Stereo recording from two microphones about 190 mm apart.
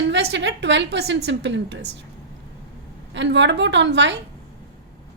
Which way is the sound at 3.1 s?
70° right (ahead or behind).